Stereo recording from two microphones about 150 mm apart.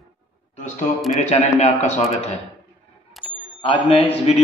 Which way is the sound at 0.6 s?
55° left (ahead or behind).